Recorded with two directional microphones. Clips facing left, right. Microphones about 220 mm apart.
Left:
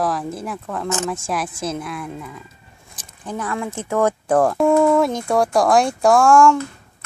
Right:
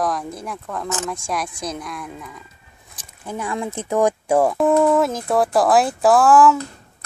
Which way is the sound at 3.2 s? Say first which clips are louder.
Even; 10° right (ahead or behind).